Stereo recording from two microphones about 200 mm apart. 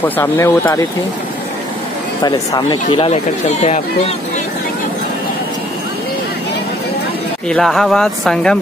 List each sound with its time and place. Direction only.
0.0 s speech: 10° left (ahead or behind)
2.2 s speech: 20° left (ahead or behind)
7.4 s speech: centre (ahead or behind)